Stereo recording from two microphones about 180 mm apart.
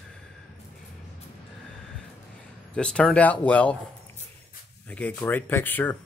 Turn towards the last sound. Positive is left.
turn(degrees=10)  # may be behind; listen again after turning